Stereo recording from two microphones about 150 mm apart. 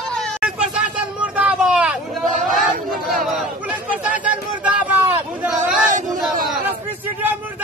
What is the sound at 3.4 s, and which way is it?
Chatter, 10° right (ahead or behind).